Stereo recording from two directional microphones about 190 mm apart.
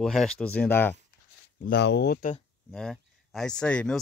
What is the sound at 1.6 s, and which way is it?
Speech, 60° left (ahead or behind).